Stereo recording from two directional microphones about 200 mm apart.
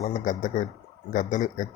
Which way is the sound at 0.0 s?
40° left (ahead or behind).